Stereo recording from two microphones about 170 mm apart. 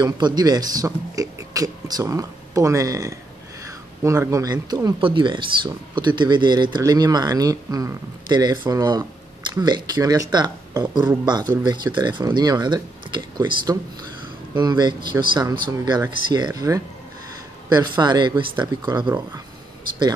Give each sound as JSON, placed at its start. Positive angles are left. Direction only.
{"t": 0.0, "sound": "speech", "side_deg": -25}